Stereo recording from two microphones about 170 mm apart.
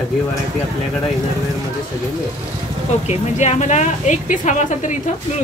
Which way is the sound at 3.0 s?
40° left (ahead or behind).